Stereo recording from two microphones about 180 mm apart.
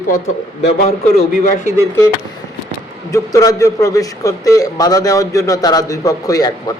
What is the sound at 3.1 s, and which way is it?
A man's voice, 20° left (ahead or behind).